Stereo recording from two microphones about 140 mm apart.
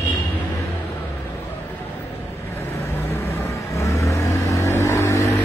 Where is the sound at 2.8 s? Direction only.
20° left (ahead or behind).